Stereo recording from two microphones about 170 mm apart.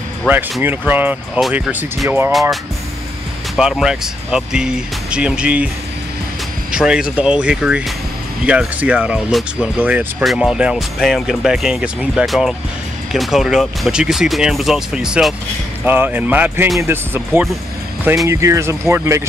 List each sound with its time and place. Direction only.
0.3 s speech: 10° right (ahead or behind)
3.5 s speech: 5° right (ahead or behind)
6.7 s speech: 5° right (ahead or behind)